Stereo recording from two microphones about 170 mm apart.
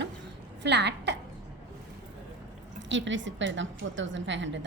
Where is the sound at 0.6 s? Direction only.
90° right.